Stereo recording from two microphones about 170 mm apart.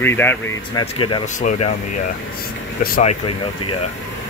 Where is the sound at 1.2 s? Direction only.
45° left (ahead or behind).